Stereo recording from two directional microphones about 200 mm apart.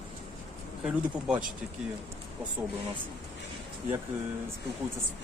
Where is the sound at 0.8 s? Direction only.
5° right (ahead or behind).